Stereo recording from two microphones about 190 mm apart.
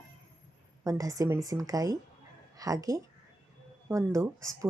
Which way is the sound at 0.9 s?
20° right (ahead or behind).